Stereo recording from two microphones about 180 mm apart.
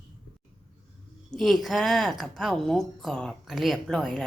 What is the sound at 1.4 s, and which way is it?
A woman's voice, centre (ahead or behind).